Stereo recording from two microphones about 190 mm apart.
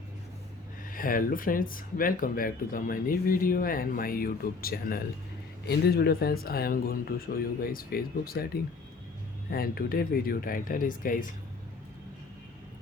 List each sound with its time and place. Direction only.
0.9 s speech: 50° left (ahead or behind)
9.5 s speech: 50° left (ahead or behind)